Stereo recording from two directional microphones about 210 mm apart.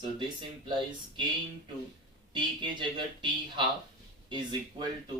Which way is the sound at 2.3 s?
20° right (ahead or behind).